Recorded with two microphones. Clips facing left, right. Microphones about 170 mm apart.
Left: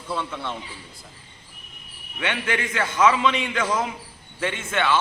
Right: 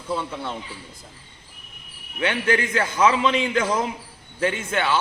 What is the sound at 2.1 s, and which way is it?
A man's voice, 35° right (ahead or behind).